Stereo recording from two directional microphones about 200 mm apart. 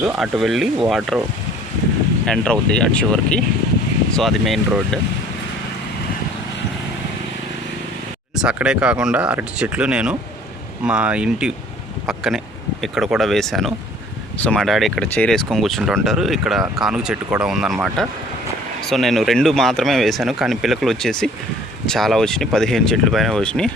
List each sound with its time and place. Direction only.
0.2 s speech: centre (ahead or behind)
2.2 s speech: 5° left (ahead or behind)
8.4 s speech: 5° right (ahead or behind)